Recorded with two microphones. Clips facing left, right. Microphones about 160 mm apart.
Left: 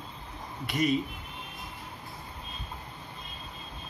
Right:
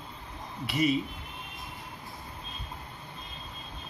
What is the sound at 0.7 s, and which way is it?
Speech, 5° right (ahead or behind).